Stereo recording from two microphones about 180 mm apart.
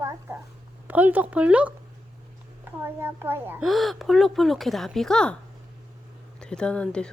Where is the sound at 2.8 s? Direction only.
10° right (ahead or behind).